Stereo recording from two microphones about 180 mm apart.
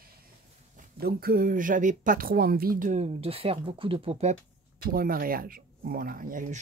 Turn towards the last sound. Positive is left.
turn(degrees=-50)  # may be behind; listen again after turning